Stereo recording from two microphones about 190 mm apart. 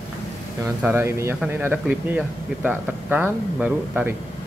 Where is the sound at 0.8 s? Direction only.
15° right (ahead or behind).